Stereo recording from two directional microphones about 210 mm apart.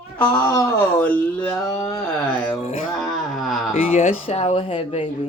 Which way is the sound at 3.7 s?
30° left (ahead or behind).